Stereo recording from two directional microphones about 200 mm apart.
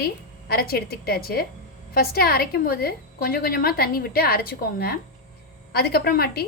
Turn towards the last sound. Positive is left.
turn(degrees=50)  # may be behind; listen again after turning